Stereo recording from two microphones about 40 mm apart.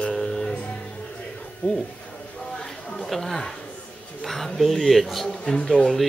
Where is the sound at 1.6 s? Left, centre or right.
Left.